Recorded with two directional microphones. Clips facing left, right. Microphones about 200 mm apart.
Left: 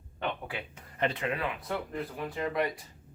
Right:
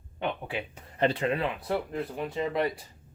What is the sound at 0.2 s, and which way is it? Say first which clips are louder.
Speech: right 3 dB; 25° right (ahead or behind).